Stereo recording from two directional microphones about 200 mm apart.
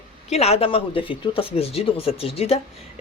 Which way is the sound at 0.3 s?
30° left (ahead or behind).